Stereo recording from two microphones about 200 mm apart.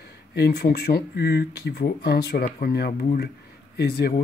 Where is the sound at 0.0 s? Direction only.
50° left (ahead or behind).